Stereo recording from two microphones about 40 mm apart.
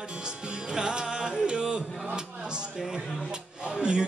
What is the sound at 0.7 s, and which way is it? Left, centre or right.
Music, centre.